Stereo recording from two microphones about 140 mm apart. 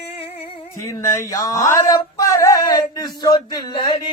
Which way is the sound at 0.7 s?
20° left (ahead or behind).